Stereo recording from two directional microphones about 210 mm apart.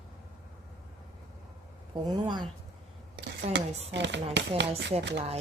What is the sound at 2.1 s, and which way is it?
Speech, 20° right (ahead or behind).